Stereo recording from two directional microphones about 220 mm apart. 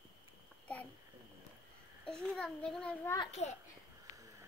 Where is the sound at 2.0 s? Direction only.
5° left (ahead or behind).